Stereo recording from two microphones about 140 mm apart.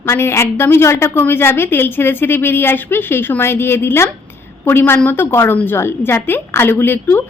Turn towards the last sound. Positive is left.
turn(degrees=15)  # may be behind; listen again after turning